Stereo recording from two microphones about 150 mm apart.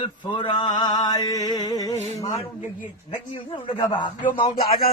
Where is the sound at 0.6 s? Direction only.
30° left (ahead or behind).